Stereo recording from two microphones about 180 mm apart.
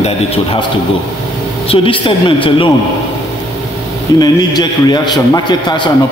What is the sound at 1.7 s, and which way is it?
A man's voice, 30° left (ahead or behind).